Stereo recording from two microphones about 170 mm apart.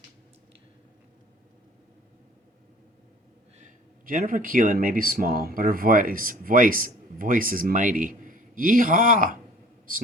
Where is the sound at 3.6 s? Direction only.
50° right (ahead or behind).